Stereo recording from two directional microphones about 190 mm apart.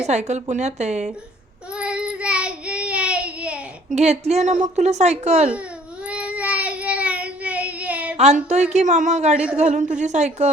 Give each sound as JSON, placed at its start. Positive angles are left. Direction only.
{"t": 0.0, "sound": "a woman's voice", "side_deg": -35}
{"t": 1.7, "sound": "child singing", "side_deg": -5}
{"t": 3.9, "sound": "a woman's voice", "side_deg": -35}
{"t": 6.1, "sound": "child singing", "side_deg": -5}
{"t": 8.2, "sound": "a woman's voice", "side_deg": -35}
{"t": 9.3, "sound": "a man's voice", "side_deg": -5}
{"t": 9.6, "sound": "a woman's voice", "side_deg": -40}